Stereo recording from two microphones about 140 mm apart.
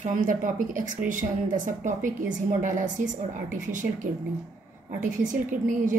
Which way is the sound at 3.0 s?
65° right (ahead or behind).